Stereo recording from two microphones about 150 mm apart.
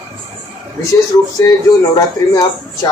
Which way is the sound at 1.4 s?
20° left (ahead or behind).